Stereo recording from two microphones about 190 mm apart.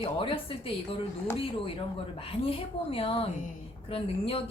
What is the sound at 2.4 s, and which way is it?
A woman's voice, 30° left (ahead or behind).